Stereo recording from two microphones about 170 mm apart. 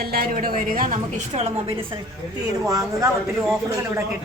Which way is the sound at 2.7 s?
20° right (ahead or behind).